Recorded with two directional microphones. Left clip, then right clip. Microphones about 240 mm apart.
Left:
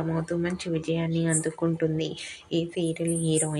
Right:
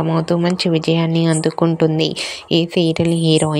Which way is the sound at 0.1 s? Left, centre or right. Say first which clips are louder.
Right 11 dB; right.